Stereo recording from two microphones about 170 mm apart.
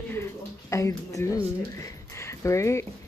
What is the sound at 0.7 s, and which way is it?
Speech, 20° left (ahead or behind).